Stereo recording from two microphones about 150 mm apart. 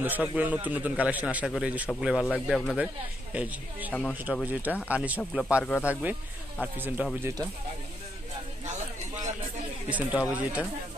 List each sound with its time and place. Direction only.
0.0 s a man's voice: 10° right (ahead or behind)
3.9 s speech: 5° left (ahead or behind)
4.5 s a man's voice: 10° right (ahead or behind)
5.6 s speech: 15° left (ahead or behind)
6.6 s a man's voice: 10° right (ahead or behind)
9.8 s a man's voice: 10° right (ahead or behind)